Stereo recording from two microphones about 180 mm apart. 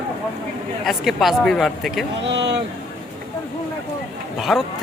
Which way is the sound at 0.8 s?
Centre (ahead or behind).